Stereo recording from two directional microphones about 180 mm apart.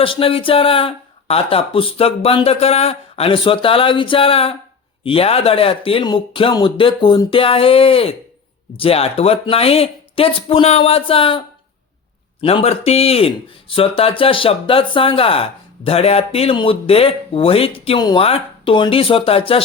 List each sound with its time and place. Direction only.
0.0 s speech: 30° left (ahead or behind)